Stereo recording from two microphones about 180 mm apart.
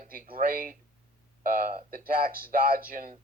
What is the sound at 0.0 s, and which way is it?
Speech, 50° right (ahead or behind).